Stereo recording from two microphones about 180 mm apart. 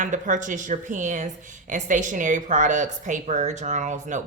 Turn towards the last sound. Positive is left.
turn(degrees=-45)  # may be behind; listen again after turning